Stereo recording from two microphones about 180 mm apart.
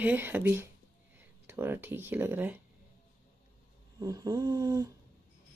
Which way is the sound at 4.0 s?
20° right (ahead or behind).